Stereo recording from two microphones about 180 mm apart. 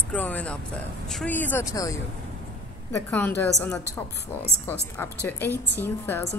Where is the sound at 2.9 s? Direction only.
10° left (ahead or behind).